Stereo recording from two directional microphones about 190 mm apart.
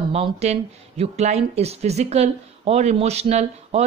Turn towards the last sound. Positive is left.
turn(degrees=-35)  # may be behind; listen again after turning